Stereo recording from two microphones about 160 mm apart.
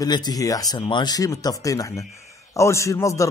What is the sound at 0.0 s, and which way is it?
Speech, 25° left (ahead or behind).